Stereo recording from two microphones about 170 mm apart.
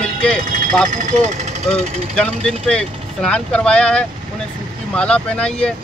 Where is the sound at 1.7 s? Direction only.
5° left (ahead or behind).